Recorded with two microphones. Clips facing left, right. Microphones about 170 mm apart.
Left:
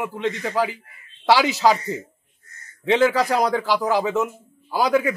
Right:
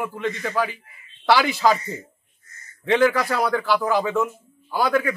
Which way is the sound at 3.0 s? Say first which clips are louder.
Left 1 dB; 15° left (ahead or behind).